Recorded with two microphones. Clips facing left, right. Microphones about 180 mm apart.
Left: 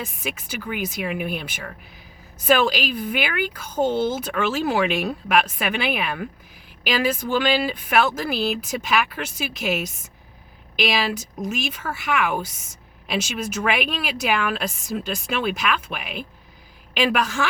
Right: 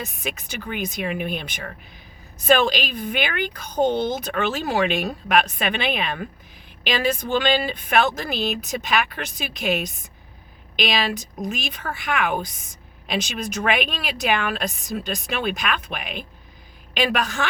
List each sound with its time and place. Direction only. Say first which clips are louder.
0.0 s speech: even; 10° left (ahead or behind)